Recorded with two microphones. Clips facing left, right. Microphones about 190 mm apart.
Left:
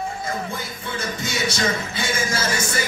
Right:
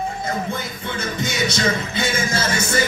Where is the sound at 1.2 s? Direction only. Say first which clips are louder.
Right 3 dB; 20° right (ahead or behind).